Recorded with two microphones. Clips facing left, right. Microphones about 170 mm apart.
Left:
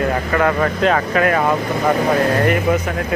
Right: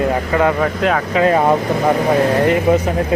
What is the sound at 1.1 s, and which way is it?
Speech, 20° right (ahead or behind).